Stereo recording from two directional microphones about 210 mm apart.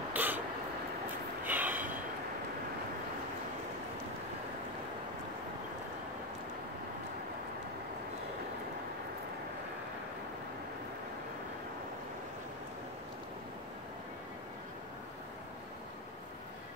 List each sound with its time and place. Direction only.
0.1 s crow: 10° right (ahead or behind)
1.4 s train: 10° right (ahead or behind)